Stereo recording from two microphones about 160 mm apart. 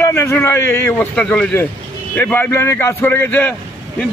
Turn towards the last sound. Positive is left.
turn(degrees=10)  # may be behind; listen again after turning